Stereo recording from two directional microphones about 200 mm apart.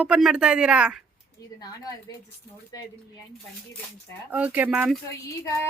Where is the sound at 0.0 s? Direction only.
5° right (ahead or behind).